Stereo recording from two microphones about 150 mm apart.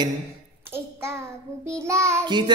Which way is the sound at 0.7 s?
15° right (ahead or behind).